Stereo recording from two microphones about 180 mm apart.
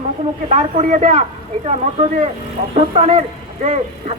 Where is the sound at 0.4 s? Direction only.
35° right (ahead or behind).